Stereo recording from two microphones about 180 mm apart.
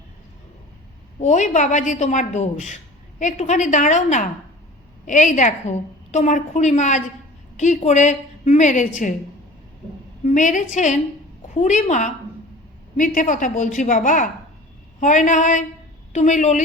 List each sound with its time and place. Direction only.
1.2 s a woman's voice: 40° left (ahead or behind)
10.2 s a woman's voice: 45° left (ahead or behind)